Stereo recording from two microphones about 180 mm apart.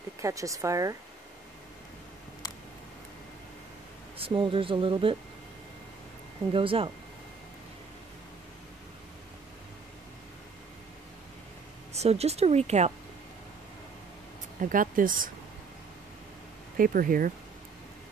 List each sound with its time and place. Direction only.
0.2 s speech: 20° right (ahead or behind)
4.2 s speech: 30° right (ahead or behind)
6.5 s speech: 30° right (ahead or behind)
11.9 s speech: 35° right (ahead or behind)
14.6 s speech: 50° right (ahead or behind)
16.7 s speech: 50° right (ahead or behind)